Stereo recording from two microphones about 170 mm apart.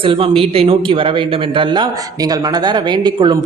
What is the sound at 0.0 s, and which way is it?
A man's voice, 35° right (ahead or behind).